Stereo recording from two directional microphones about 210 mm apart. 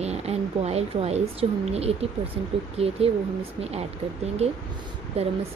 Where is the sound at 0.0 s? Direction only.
30° right (ahead or behind).